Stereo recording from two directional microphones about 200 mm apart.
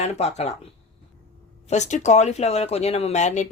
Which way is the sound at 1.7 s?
35° left (ahead or behind).